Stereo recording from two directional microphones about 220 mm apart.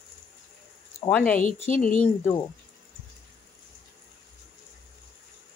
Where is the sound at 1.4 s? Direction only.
35° left (ahead or behind).